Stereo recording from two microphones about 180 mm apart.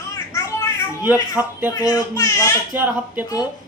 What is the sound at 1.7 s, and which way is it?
Speech, 20° left (ahead or behind).